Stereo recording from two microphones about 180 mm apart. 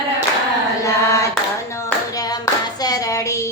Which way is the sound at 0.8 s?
15° left (ahead or behind).